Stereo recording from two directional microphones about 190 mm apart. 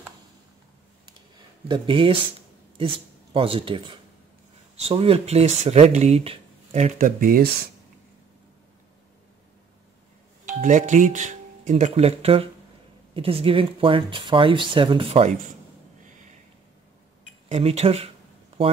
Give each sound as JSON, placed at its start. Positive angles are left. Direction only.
{"t": 1.7, "sound": "speech", "side_deg": -25}
{"t": 3.3, "sound": "speech", "side_deg": -30}
{"t": 10.4, "sound": "speech", "side_deg": -40}
{"t": 17.5, "sound": "speech", "side_deg": -35}